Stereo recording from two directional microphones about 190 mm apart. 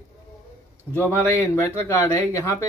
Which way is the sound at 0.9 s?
10° left (ahead or behind).